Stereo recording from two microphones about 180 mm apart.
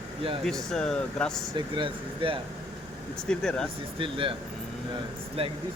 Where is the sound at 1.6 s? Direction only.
25° right (ahead or behind).